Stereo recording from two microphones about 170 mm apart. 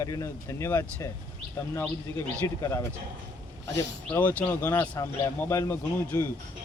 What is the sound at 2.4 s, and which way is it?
Speech, 20° left (ahead or behind).